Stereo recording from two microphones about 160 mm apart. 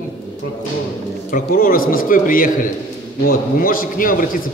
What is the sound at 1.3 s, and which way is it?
A man's voice, 65° left (ahead or behind).